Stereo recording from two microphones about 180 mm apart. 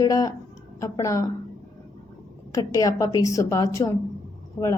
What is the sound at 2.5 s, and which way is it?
A woman's voice, 20° left (ahead or behind).